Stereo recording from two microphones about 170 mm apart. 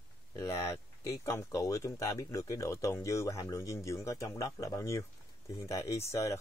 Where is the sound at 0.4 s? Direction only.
15° left (ahead or behind).